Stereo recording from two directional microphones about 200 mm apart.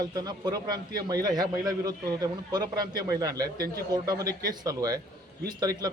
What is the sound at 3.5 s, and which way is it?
Speech, 50° right (ahead or behind).